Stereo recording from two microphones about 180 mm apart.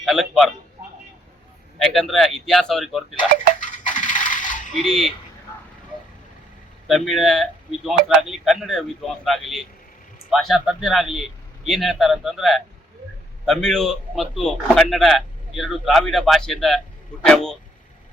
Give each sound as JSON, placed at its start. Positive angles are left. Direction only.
{"t": 0.0, "sound": "a man's voice", "side_deg": 0}
{"t": 1.8, "sound": "a man's voice", "side_deg": 0}
{"t": 3.6, "sound": "coin", "side_deg": 45}
{"t": 4.8, "sound": "a man's voice", "side_deg": 0}
{"t": 6.8, "sound": "a man's voice", "side_deg": 0}